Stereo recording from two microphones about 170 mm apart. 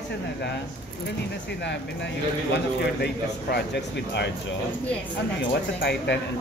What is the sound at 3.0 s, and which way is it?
Speech, 70° left (ahead or behind).